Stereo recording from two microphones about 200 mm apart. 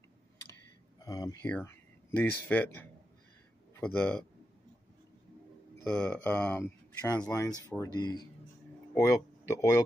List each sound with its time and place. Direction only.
0.9 s a man's voice: 20° left (ahead or behind)
5.9 s speech: 5° left (ahead or behind)